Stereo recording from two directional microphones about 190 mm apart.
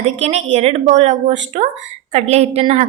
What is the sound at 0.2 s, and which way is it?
A woman's voice, 35° right (ahead or behind).